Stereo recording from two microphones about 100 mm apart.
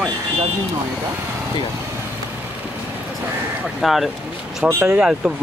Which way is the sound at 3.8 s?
Centre (ahead or behind).